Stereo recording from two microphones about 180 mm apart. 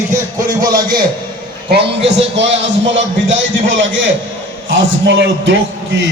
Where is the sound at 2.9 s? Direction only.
90° right.